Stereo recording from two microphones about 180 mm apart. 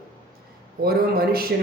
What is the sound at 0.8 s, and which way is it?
Speech, 55° right (ahead or behind).